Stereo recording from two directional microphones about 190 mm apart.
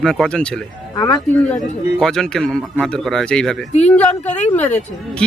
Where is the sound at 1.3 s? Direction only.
5° left (ahead or behind).